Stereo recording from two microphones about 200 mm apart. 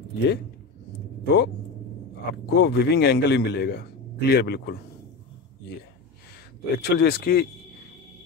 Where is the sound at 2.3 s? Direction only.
55° left (ahead or behind).